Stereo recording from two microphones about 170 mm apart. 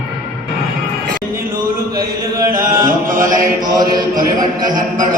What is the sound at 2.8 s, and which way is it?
Mantra, 50° right (ahead or behind).